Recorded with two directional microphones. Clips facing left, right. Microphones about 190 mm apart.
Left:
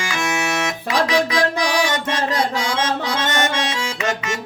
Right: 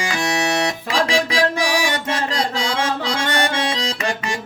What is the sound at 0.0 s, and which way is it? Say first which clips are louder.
Music: right 2 dB; 35° right (ahead or behind).